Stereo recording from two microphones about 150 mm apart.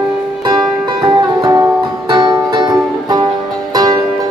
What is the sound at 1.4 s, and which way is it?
Music, 25° right (ahead or behind).